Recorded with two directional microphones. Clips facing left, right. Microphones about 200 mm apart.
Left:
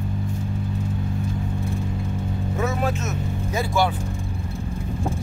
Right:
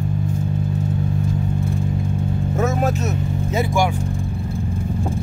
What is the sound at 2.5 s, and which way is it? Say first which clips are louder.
Vehicle: right 4 dB; 45° right (ahead or behind).